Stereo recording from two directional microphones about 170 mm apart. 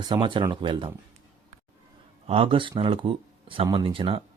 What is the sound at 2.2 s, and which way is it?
Speech, 35° right (ahead or behind).